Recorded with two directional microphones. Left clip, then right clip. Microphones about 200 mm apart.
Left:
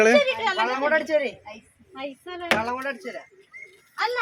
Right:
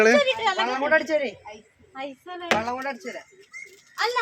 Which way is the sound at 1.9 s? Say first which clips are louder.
Even; 5° right (ahead or behind).